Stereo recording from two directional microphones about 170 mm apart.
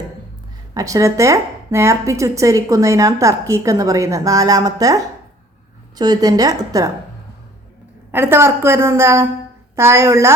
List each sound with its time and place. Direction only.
0.7 s a woman's voice: 20° right (ahead or behind)
8.1 s a woman's voice: 15° right (ahead or behind)